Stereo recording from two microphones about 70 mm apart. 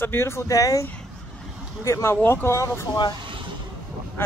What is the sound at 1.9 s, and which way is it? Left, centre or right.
Speech, left.